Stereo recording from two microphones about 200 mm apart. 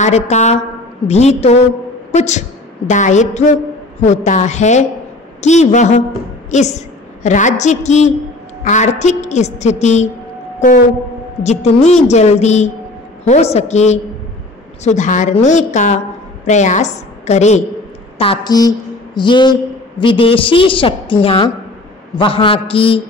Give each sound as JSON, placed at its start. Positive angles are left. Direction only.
{"t": 0.0, "sound": "a woman's voice", "side_deg": 35}
{"t": 11.4, "sound": "a woman's voice", "side_deg": 35}